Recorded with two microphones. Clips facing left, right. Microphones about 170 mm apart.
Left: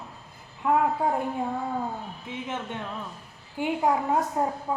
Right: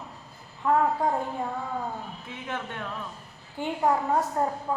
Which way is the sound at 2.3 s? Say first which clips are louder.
Left 3 dB; 20° left (ahead or behind).